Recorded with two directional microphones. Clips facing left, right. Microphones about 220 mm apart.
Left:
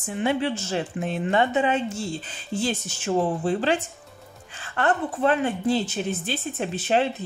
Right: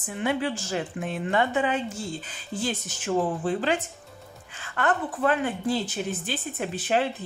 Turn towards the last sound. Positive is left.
turn(degrees=25)  # may be behind; listen again after turning